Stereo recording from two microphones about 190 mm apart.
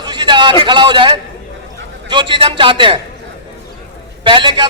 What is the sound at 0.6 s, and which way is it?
A man's voice, 25° right (ahead or behind).